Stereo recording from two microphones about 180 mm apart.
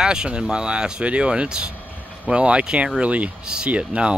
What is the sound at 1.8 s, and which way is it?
Vehicle, 10° left (ahead or behind).